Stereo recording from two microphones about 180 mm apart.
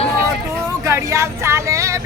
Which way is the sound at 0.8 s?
15° right (ahead or behind).